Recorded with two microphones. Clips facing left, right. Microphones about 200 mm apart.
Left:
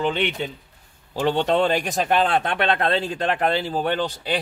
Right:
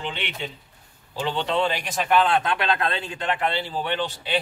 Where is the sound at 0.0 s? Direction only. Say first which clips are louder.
Left 8 dB; 45° left (ahead or behind).